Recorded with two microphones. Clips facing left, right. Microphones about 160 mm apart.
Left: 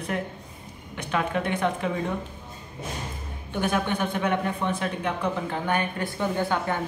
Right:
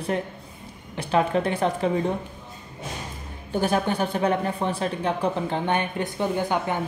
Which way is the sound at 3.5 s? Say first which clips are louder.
Right 3 dB; 35° right (ahead or behind).